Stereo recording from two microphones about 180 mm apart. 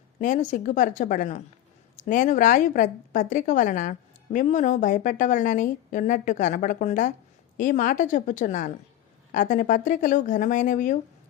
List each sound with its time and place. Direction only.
0.2 s speech: 45° left (ahead or behind)